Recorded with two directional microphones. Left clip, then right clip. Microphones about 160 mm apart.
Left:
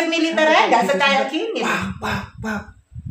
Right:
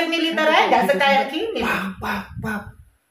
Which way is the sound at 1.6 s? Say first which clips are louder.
Left 1 dB; 10° right (ahead or behind).